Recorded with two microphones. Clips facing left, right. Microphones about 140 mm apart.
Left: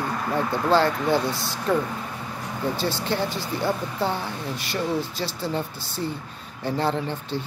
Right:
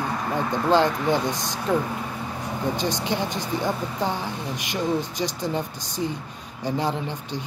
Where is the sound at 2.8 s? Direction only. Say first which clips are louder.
Even; 15° right (ahead or behind).